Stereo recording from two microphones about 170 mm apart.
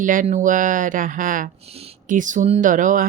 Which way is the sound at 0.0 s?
50° right (ahead or behind).